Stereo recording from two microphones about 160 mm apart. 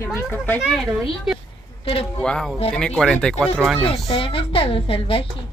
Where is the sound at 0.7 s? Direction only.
Centre (ahead or behind).